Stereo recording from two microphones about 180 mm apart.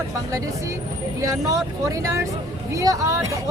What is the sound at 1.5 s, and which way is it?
Speech, 20° right (ahead or behind).